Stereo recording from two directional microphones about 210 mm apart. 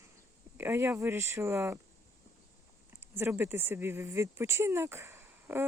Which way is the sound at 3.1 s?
10° right (ahead or behind).